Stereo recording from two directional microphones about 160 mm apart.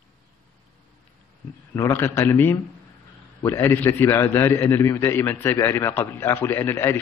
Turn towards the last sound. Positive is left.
turn(degrees=15)  # may be behind; listen again after turning